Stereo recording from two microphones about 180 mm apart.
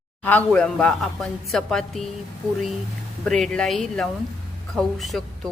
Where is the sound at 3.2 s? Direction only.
5° left (ahead or behind).